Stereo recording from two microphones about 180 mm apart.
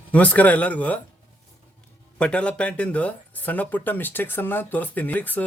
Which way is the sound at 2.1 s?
5° left (ahead or behind).